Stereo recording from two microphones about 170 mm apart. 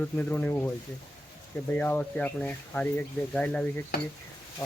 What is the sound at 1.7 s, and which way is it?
Speech, 10° left (ahead or behind).